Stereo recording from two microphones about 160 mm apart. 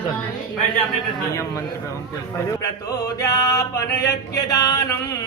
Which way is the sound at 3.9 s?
90° left.